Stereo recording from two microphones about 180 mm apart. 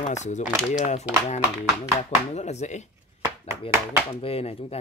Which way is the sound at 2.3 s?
40° left (ahead or behind).